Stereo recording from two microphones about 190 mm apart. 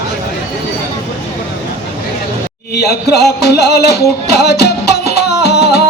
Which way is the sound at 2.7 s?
60° left (ahead or behind).